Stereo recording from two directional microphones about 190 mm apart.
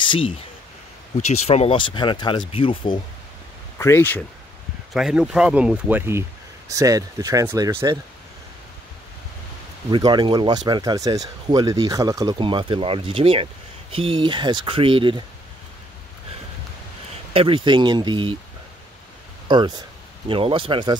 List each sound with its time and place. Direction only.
0.0 s a sound: 25° left (ahead or behind)
1.1 s speech: 35° left (ahead or behind)
3.7 s speech: 10° left (ahead or behind)
4.9 s speech: 5° right (ahead or behind)
9.8 s speech: 25° right (ahead or behind)
17.3 s speech: 30° right (ahead or behind)
19.4 s a sound: 25° right (ahead or behind)
20.2 s speech: 30° right (ahead or behind)